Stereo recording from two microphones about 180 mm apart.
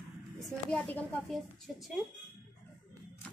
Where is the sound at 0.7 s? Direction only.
5° left (ahead or behind).